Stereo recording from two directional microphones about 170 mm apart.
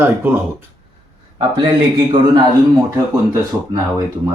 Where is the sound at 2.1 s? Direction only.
30° right (ahead or behind).